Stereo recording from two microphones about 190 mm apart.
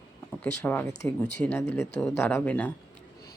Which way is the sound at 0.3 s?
10° left (ahead or behind).